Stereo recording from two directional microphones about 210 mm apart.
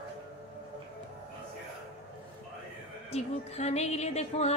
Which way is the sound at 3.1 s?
30° left (ahead or behind).